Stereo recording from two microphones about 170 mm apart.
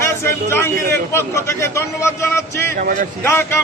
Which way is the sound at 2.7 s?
55° right (ahead or behind).